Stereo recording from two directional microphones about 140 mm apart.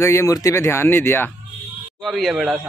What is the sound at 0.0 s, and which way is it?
Speech, 20° left (ahead or behind).